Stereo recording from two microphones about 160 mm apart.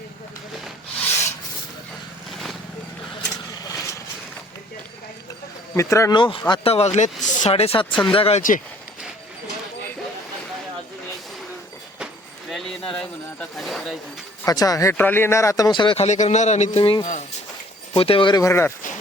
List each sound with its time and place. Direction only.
2.3 s vehicle: centre (ahead or behind)
3.6 s vehicle: 20° left (ahead or behind)
5.7 s speech: 20° left (ahead or behind)
6.1 s speech: 30° left (ahead or behind)
7.9 s speech: 10° left (ahead or behind)
8.1 s speech: 35° left (ahead or behind)
8.4 s speech: 55° left (ahead or behind)
12.5 s a sound: centre (ahead or behind)
14.4 s speech: 25° left (ahead or behind)
16.0 s a man's voice: 45° left (ahead or behind); by 18.7 s 15° left (ahead or behind)